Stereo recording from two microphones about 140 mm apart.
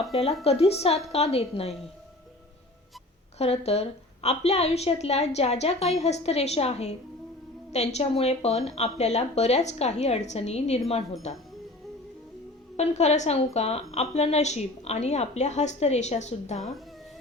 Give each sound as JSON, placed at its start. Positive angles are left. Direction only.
{"t": 0.1, "sound": "a woman's voice", "side_deg": 45}
{"t": 3.3, "sound": "a woman's voice", "side_deg": 50}
{"t": 12.7, "sound": "a woman's voice", "side_deg": 50}